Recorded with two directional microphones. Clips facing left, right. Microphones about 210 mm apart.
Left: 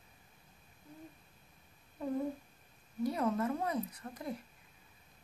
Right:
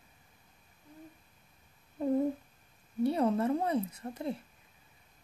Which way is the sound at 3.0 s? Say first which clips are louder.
Right 5 dB; 30° right (ahead or behind).